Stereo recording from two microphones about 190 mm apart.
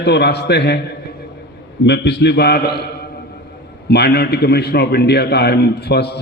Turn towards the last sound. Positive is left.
turn(degrees=60)  # may be behind; listen again after turning